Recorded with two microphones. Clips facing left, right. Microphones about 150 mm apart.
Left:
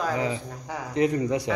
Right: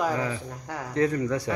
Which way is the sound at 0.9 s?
20° left (ahead or behind).